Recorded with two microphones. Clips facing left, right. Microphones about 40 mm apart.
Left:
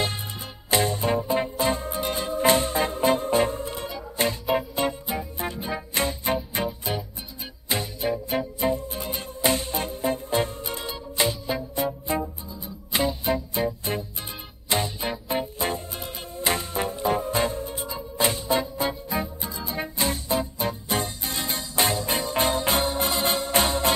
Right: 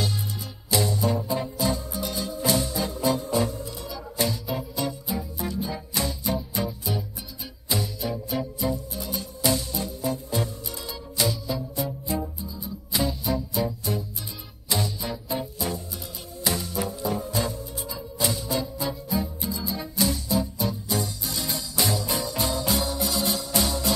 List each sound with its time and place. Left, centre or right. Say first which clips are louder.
0.7 s music: left 2 dB; left